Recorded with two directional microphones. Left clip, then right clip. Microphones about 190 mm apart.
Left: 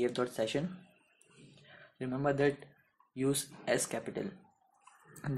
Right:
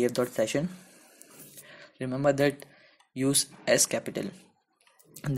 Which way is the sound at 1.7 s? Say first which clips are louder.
Right 5 dB; 45° right (ahead or behind).